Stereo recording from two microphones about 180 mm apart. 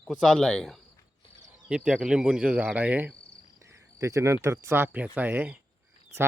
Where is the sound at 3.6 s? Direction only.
15° right (ahead or behind).